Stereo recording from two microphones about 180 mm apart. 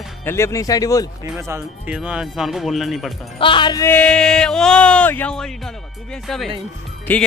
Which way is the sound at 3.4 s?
25° left (ahead or behind).